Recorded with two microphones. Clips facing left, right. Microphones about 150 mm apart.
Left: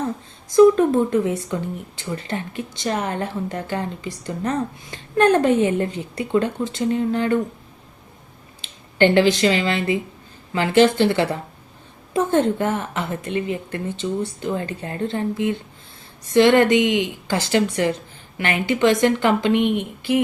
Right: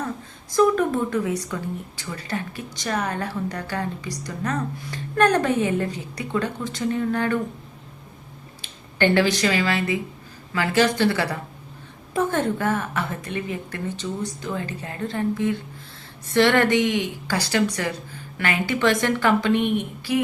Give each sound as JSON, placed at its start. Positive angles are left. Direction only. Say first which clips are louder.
{"t": 0.5, "sound": "a woman's voice", "louder": "left 6 dB", "side_deg": 25}
{"t": 9.0, "sound": "a woman's voice", "louder": "left 4 dB", "side_deg": 20}